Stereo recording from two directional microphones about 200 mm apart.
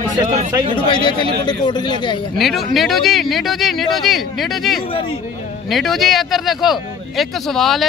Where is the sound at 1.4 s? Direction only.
20° left (ahead or behind).